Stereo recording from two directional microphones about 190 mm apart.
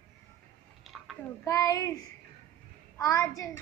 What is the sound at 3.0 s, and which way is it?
Child singing, 15° left (ahead or behind).